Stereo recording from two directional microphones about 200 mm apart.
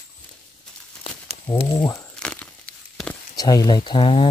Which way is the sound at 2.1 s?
5° left (ahead or behind).